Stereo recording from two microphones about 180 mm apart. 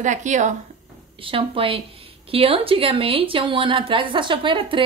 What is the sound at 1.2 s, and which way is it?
A woman's voice, 30° right (ahead or behind).